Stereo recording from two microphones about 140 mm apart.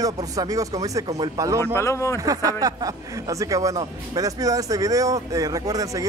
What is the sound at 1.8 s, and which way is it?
Speech, 20° left (ahead or behind).